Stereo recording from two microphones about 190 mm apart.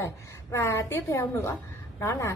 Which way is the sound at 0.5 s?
15° left (ahead or behind).